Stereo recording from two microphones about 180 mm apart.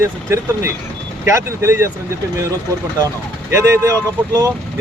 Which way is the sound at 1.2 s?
15° right (ahead or behind).